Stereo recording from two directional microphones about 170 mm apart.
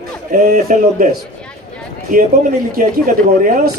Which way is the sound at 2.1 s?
55° right (ahead or behind).